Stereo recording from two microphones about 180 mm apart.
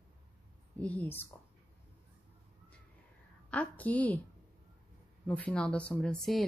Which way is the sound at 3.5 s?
10° left (ahead or behind).